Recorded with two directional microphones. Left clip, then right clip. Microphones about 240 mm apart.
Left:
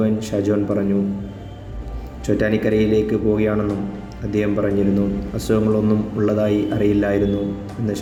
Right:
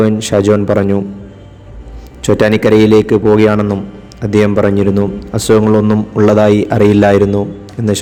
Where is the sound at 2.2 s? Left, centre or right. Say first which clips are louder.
Right 9 dB; right.